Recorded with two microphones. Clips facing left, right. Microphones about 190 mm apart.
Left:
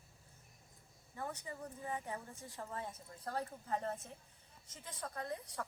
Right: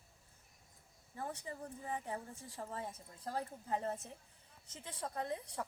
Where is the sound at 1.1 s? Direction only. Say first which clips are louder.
Right 1 dB; 30° right (ahead or behind).